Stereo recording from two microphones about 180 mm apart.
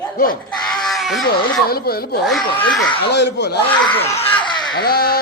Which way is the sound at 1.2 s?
60° left (ahead or behind).